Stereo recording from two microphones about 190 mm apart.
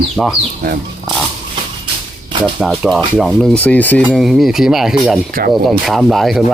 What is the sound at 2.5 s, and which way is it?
Speech, 5° right (ahead or behind).